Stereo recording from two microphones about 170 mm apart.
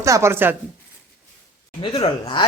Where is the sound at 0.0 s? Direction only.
15° right (ahead or behind).